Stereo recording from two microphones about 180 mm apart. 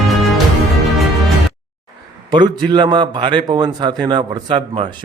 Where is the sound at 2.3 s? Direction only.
25° right (ahead or behind).